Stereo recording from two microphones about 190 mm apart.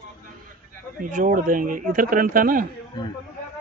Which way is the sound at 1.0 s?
45° right (ahead or behind).